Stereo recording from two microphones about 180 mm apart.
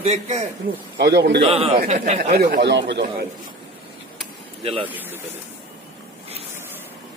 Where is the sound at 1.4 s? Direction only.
30° right (ahead or behind).